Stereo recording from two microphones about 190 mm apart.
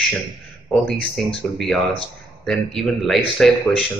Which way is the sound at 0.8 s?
Centre (ahead or behind).